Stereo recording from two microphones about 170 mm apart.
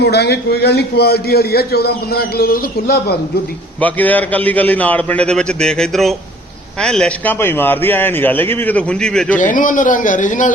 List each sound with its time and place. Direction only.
0.0 s a man's voice: 75° left (ahead or behind)
3.8 s a man's voice: 10° left (ahead or behind)
9.4 s speech: 50° left (ahead or behind)